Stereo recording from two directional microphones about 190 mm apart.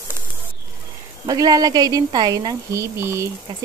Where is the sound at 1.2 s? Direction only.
20° right (ahead or behind).